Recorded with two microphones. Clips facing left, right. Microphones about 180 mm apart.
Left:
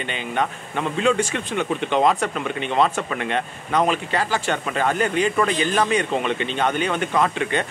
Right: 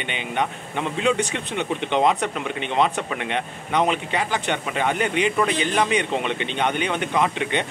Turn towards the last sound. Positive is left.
turn(degrees=-20)  # may be behind; listen again after turning